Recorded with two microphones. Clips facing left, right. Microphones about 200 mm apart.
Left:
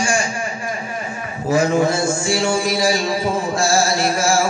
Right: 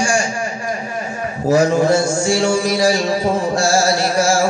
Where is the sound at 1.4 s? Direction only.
45° right (ahead or behind).